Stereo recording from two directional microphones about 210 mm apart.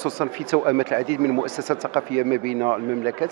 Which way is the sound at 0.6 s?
15° right (ahead or behind).